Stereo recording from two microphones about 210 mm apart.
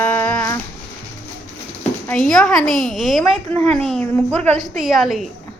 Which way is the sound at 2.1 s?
Centre (ahead or behind).